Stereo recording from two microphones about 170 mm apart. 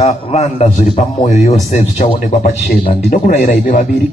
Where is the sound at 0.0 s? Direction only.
40° left (ahead or behind).